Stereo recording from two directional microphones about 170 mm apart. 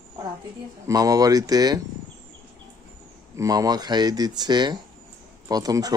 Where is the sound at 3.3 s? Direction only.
20° right (ahead or behind).